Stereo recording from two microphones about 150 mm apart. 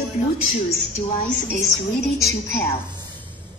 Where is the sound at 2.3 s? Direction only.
20° left (ahead or behind).